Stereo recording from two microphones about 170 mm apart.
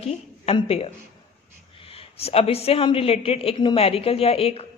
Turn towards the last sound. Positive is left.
turn(degrees=35)  # may be behind; listen again after turning